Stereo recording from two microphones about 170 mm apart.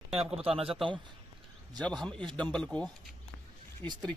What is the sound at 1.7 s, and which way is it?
Speech, centre (ahead or behind).